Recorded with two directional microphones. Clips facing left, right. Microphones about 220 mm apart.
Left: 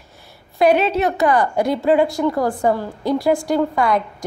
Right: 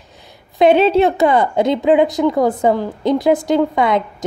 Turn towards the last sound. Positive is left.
turn(degrees=-20)  # may be behind; listen again after turning